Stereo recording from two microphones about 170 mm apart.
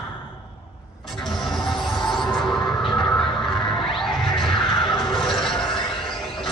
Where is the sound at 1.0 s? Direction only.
Centre (ahead or behind).